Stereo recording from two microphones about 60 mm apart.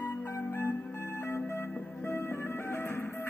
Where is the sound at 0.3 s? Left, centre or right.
Left.